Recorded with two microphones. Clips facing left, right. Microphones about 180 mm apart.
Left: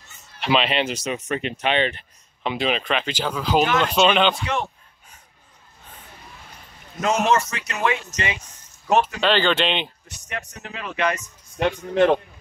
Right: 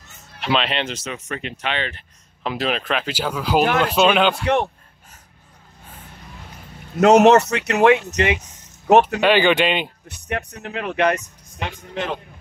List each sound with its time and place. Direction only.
0.4 s speech: centre (ahead or behind); by 2.0 s 20° left (ahead or behind)
2.4 s speech: centre (ahead or behind)
7.0 s speech: 70° right (ahead or behind)
9.2 s speech: 10° right (ahead or behind)
10.0 s speech: 60° right (ahead or behind)
11.5 s a man's voice: 55° left (ahead or behind)